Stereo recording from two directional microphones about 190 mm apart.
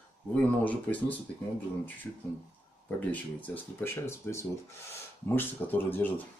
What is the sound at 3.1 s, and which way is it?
Speech, 10° left (ahead or behind).